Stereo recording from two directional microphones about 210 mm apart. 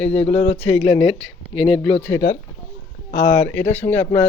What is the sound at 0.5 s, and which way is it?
Speech, 10° left (ahead or behind).